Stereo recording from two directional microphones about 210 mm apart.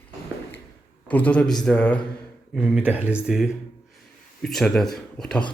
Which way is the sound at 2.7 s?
5° right (ahead or behind).